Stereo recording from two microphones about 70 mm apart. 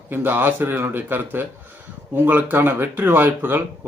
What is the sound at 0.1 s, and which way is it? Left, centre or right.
Speech, right.